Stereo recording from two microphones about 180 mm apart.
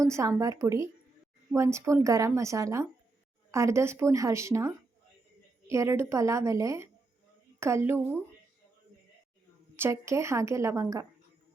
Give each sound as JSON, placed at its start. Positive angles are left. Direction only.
{"t": 0.0, "sound": "a woman's voice", "side_deg": -15}
{"t": 9.7, "sound": "a woman's voice", "side_deg": -15}